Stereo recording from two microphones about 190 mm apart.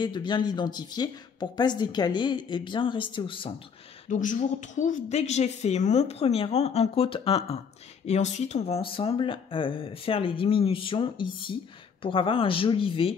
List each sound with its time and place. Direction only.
0.0 s speech: 25° left (ahead or behind)
4.1 s a woman's voice: 40° left (ahead or behind)